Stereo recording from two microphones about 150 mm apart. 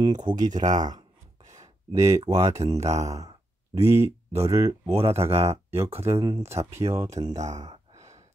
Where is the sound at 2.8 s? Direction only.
45° right (ahead or behind).